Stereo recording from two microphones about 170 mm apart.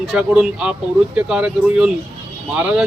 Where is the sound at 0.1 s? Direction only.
5° right (ahead or behind).